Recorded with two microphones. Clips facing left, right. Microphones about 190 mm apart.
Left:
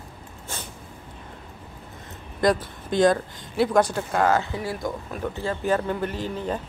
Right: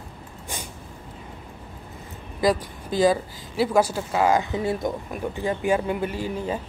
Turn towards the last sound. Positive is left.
turn(degrees=-10)  # may be behind; listen again after turning